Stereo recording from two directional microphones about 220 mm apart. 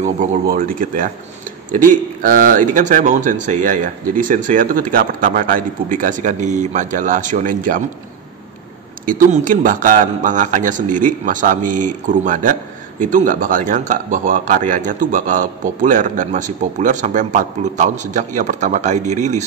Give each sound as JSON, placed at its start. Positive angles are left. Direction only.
{"t": 0.0, "sound": "speech", "side_deg": -35}
{"t": 9.0, "sound": "speech", "side_deg": -40}